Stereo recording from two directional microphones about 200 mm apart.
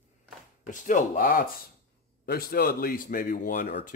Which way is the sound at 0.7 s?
40° left (ahead or behind).